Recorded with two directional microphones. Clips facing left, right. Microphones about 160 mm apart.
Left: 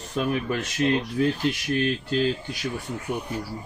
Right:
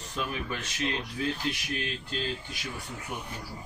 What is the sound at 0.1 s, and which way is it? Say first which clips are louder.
Speech: left 9 dB; 50° left (ahead or behind).